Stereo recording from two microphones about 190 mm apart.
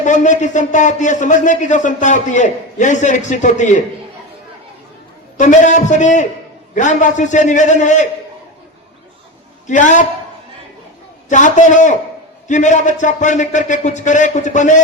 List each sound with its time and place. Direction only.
0.0 s a man's voice: 40° left (ahead or behind)
5.4 s a man's voice: 40° left (ahead or behind)
9.6 s a man's voice: 40° left (ahead or behind)
11.3 s a man's voice: 40° left (ahead or behind)